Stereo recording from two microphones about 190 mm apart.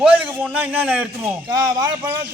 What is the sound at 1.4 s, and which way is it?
Speech, 20° right (ahead or behind).